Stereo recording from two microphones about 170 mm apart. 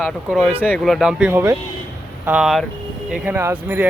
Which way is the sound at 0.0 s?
Centre (ahead or behind).